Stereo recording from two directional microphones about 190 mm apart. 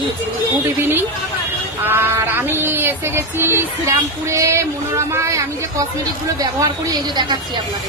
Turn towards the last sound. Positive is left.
turn(degrees=-20)  # may be behind; listen again after turning